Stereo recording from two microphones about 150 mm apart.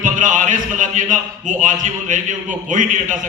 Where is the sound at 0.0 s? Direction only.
60° right (ahead or behind).